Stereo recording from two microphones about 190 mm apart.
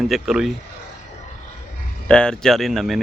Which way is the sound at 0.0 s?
Centre (ahead or behind).